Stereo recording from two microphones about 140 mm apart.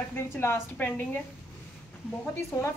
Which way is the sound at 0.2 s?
20° left (ahead or behind).